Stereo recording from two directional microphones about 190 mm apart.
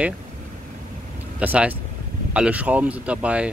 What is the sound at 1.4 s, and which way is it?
Speech, 10° right (ahead or behind).